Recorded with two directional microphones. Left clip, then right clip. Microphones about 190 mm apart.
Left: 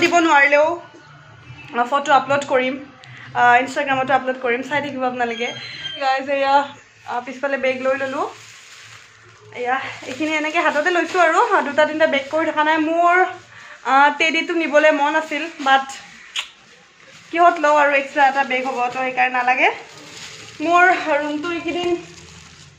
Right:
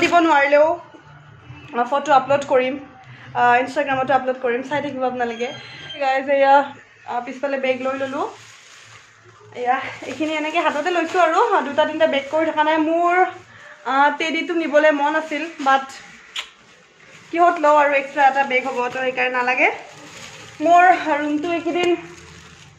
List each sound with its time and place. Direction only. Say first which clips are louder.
0.0 s a woman's voice: left 1 dB; centre (ahead or behind)
1.7 s a woman's voice: left 1 dB; 5° left (ahead or behind)
6.0 s a woman's voice: right 2 dB; 20° right (ahead or behind)
7.1 s a woman's voice: left 1 dB; centre (ahead or behind)
10.2 s a woman's voice: left 2 dB; centre (ahead or behind)
16.4 s a sound: left 3 dB; centre (ahead or behind)
17.3 s a woman's voice: even; centre (ahead or behind)